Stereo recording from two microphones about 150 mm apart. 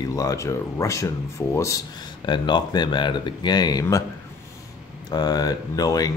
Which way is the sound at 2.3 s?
30° left (ahead or behind).